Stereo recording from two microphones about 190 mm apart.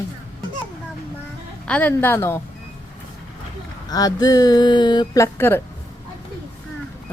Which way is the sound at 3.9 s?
20° left (ahead or behind).